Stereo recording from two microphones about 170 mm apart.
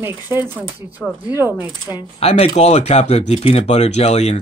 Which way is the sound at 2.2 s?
35° left (ahead or behind).